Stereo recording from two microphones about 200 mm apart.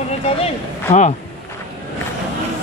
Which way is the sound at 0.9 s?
35° left (ahead or behind).